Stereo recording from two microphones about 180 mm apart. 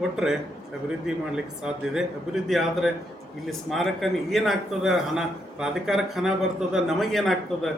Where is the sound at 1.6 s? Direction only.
Centre (ahead or behind).